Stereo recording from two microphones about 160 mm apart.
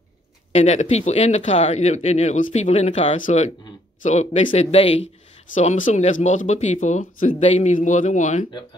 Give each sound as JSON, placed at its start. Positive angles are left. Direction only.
{"t": 0.5, "sound": "speech", "side_deg": 45}